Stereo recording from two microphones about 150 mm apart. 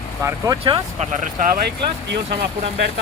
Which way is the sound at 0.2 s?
20° right (ahead or behind).